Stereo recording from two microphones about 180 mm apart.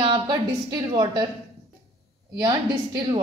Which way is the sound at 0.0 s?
25° right (ahead or behind).